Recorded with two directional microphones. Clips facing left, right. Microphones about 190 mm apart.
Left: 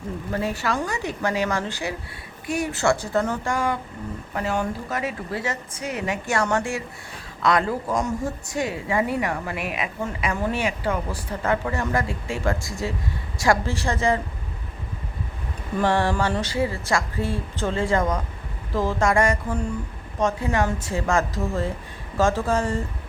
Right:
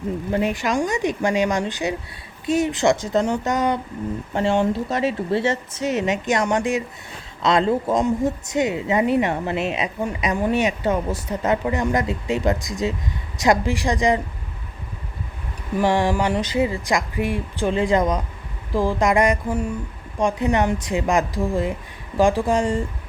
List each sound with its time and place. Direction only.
0.3 s speech: 20° right (ahead or behind)
15.8 s speech: 15° right (ahead or behind)